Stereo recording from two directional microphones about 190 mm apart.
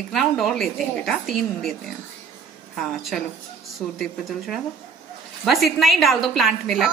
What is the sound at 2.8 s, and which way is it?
A woman's voice, centre (ahead or behind).